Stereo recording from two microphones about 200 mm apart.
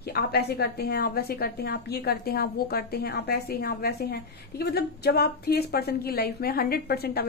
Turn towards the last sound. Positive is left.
turn(degrees=50)  # may be behind; listen again after turning